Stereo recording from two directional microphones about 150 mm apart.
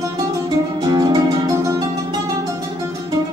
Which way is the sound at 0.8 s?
25° right (ahead or behind).